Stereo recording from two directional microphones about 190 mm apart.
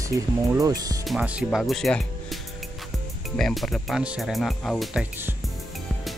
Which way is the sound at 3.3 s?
Centre (ahead or behind).